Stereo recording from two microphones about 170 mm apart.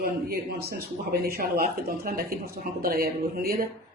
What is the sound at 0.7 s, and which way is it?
Speech, 65° right (ahead or behind).